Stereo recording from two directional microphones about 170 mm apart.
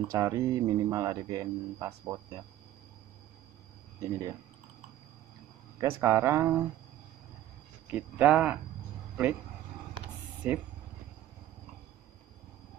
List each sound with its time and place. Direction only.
0.1 s speech: 20° right (ahead or behind)
4.0 s speech: 20° right (ahead or behind)
5.8 s speech: 20° right (ahead or behind)
7.9 s speech: 10° right (ahead or behind)
10.4 s speech: 10° right (ahead or behind)